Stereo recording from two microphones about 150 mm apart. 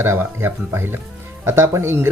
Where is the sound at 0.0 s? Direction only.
15° right (ahead or behind).